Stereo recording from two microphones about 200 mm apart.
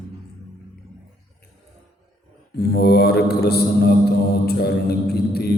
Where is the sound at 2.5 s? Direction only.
50° left (ahead or behind).